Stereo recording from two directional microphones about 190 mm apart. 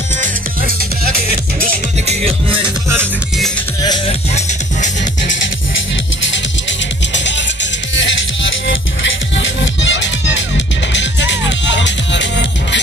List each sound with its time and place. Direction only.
7.9 s music: 75° left (ahead or behind)